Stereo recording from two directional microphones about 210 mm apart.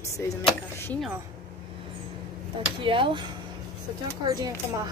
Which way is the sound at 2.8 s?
25° right (ahead or behind).